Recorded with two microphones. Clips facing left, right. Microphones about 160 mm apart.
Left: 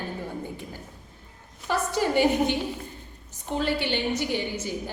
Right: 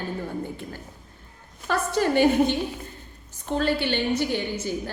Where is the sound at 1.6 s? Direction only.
15° left (ahead or behind).